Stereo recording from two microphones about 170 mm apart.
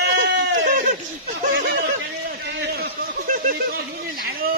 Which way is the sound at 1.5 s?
50° right (ahead or behind).